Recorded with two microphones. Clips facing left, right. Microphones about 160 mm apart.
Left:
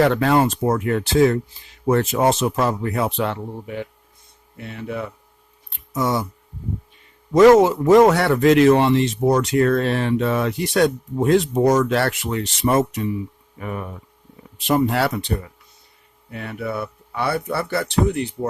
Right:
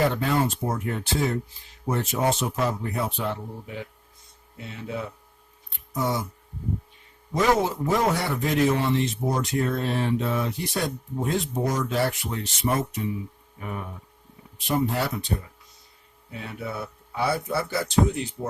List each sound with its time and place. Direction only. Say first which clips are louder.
0.0 s speech: left 7 dB; 85° left
4.5 s speech: left 4 dB; 60° left (ahead or behind)
5.9 s speech: left 5 dB; 90° left
7.3 s a man's voice: left 11 dB; 80° left
16.3 s speech: left 6 dB; 65° left (ahead or behind)